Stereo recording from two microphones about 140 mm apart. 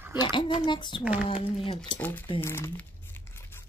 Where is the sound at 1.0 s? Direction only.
10° right (ahead or behind).